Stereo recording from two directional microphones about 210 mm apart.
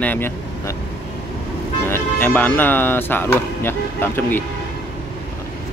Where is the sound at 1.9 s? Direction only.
10° left (ahead or behind).